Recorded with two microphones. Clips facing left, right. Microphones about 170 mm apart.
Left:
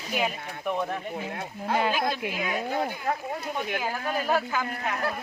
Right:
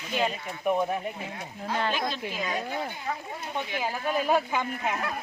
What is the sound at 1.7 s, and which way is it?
Speech, 10° left (ahead or behind).